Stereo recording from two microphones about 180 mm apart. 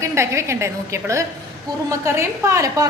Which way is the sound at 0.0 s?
15° right (ahead or behind).